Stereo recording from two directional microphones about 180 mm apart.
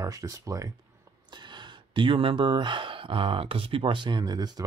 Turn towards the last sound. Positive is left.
turn(degrees=-25)  # may be behind; listen again after turning